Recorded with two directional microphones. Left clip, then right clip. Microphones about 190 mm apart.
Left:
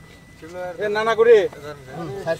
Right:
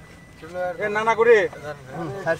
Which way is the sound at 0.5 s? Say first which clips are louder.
Even; 25° left (ahead or behind).